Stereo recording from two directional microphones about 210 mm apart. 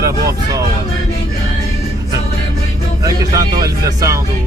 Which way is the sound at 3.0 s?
15° right (ahead or behind).